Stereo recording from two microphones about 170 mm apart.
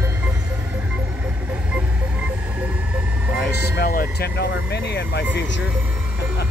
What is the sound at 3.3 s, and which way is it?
Vehicle, 65° left (ahead or behind).